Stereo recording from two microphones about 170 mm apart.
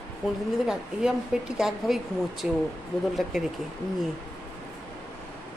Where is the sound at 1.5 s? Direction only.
Centre (ahead or behind).